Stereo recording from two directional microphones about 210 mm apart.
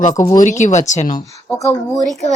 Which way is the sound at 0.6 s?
35° left (ahead or behind).